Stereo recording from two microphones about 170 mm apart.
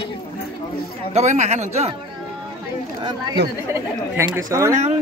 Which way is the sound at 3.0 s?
25° right (ahead or behind).